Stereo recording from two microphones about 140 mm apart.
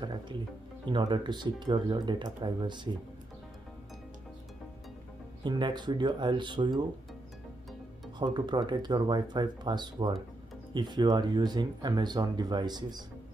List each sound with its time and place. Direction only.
0.0 s music: 30° right (ahead or behind)
0.8 s speech: 35° right (ahead or behind)
5.4 s speech: 30° right (ahead or behind)
8.2 s speech: 30° right (ahead or behind)